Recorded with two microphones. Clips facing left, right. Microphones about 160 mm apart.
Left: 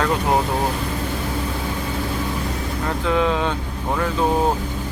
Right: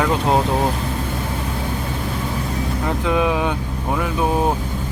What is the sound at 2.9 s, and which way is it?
Speech, 15° right (ahead or behind).